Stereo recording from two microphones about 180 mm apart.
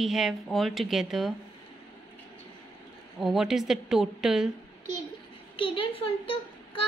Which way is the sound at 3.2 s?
Centre (ahead or behind).